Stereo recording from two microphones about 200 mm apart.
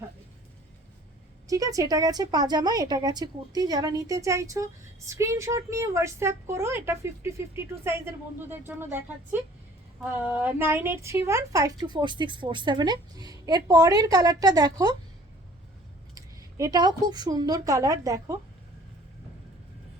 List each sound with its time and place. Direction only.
1.5 s a woman's voice: 15° right (ahead or behind)
16.1 s speech: 15° right (ahead or behind)